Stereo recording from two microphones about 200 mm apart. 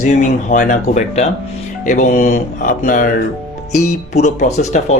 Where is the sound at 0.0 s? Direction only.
35° left (ahead or behind).